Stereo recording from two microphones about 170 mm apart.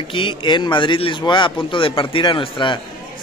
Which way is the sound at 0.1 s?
30° left (ahead or behind).